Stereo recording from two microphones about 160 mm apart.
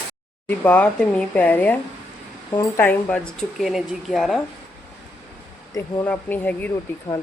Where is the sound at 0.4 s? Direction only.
10° left (ahead or behind).